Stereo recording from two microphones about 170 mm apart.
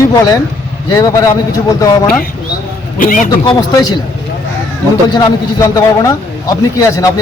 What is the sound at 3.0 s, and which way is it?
Speech, 50° left (ahead or behind).